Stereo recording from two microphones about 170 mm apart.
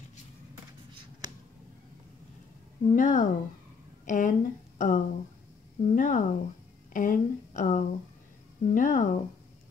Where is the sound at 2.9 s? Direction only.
50° left (ahead or behind).